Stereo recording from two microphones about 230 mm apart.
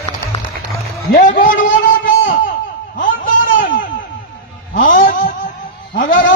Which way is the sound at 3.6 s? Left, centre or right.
Left.